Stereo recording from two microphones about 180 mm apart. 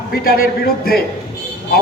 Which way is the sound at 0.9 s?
55° left (ahead or behind).